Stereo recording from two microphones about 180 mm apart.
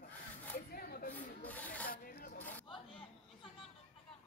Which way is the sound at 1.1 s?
10° left (ahead or behind).